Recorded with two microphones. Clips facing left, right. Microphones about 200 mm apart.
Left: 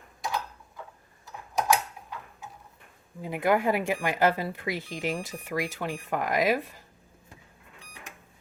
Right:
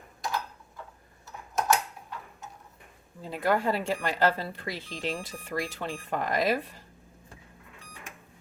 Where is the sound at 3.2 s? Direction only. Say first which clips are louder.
Left 2 dB; 15° left (ahead or behind).